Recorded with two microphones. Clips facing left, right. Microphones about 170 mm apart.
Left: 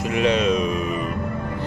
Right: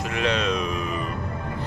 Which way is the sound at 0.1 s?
10° left (ahead or behind).